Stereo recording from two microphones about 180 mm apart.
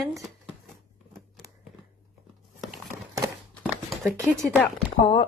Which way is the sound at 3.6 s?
Centre (ahead or behind).